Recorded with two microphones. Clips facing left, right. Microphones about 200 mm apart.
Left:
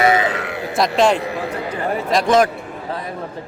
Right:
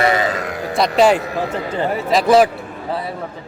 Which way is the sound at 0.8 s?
5° right (ahead or behind).